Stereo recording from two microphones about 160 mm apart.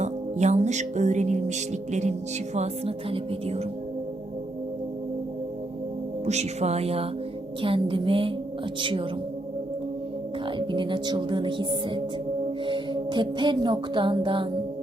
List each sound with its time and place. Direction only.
0.0 s music: 45° right (ahead or behind)
2.6 s speech: 35° right (ahead or behind)
6.2 s speech: 45° right (ahead or behind)
10.7 s speech: 30° right (ahead or behind)